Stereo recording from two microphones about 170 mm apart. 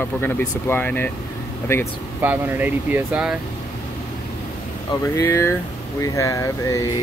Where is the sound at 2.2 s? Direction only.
10° right (ahead or behind).